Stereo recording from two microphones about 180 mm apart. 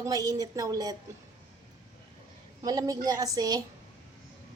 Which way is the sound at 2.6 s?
20° right (ahead or behind).